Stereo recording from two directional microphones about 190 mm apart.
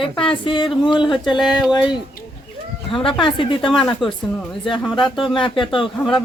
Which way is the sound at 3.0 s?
25° left (ahead or behind).